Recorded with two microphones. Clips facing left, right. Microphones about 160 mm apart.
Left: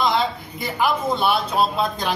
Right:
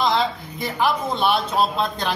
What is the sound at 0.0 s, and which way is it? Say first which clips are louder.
A man's voice: even; centre (ahead or behind).